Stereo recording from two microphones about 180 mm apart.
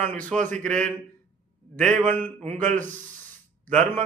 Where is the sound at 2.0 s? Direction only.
10° left (ahead or behind).